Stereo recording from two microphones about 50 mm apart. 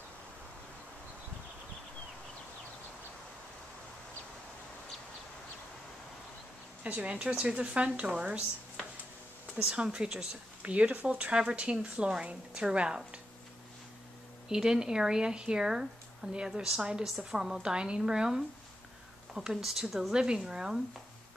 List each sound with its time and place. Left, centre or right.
6.8 s speech: right
9.7 s speech: centre
14.5 s speech: centre